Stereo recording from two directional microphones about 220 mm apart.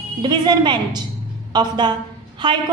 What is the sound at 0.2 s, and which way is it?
A woman's voice, 20° right (ahead or behind).